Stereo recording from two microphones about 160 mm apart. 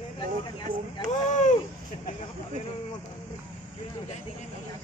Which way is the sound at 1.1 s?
50° left (ahead or behind).